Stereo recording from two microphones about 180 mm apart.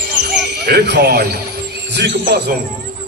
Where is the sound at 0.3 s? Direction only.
70° right (ahead or behind).